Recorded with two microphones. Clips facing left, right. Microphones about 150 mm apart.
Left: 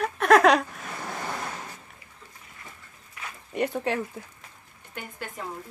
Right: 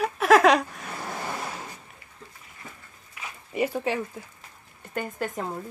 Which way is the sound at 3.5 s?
Centre (ahead or behind).